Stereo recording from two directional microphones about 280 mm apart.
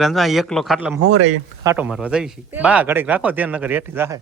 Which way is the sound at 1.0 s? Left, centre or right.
Right.